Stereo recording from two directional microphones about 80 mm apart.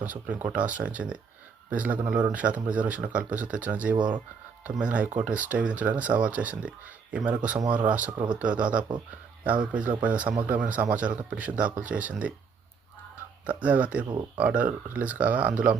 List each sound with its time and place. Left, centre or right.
0.0 s speech: right
13.4 s speech: centre